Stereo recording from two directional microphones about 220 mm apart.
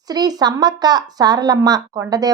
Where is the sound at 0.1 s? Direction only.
20° right (ahead or behind).